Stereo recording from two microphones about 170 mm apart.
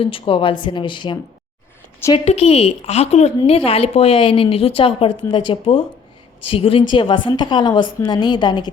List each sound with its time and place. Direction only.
0.0 s a woman's voice: 30° left (ahead or behind)